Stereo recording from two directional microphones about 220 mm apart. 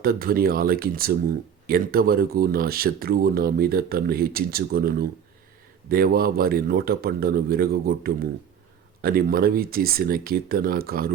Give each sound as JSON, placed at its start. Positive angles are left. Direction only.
{"t": 0.0, "sound": "speech", "side_deg": -40}